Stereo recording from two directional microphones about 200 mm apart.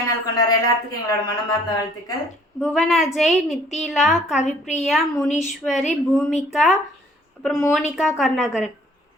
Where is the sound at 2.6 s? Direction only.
Centre (ahead or behind).